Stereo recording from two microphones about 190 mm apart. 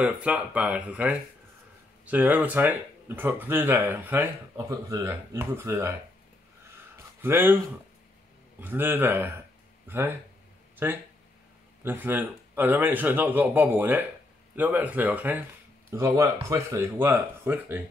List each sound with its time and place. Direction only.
0.0 s speech: 5° right (ahead or behind)
7.2 s speech: 10° right (ahead or behind)
8.5 s speech: 10° right (ahead or behind)